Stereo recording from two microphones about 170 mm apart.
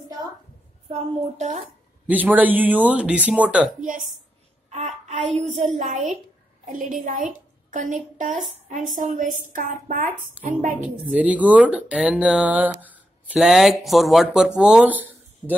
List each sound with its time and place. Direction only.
0.8 s a woman's voice: 40° right (ahead or behind)
2.0 s speech: 10° right (ahead or behind)
4.6 s a woman's voice: 40° right (ahead or behind)
11.1 s speech: 10° right (ahead or behind)